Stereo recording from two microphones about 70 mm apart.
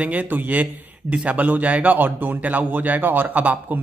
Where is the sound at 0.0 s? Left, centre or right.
Right.